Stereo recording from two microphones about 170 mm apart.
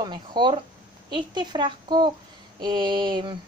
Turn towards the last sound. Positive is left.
turn(degrees=-25)  # may be behind; listen again after turning